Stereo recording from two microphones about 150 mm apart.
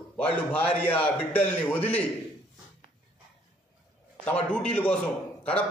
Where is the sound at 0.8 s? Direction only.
10° left (ahead or behind).